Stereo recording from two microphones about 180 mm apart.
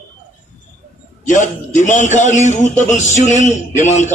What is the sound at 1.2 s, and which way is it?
A man's voice, 45° left (ahead or behind).